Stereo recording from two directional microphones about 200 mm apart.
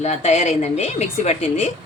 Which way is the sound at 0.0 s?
35° left (ahead or behind).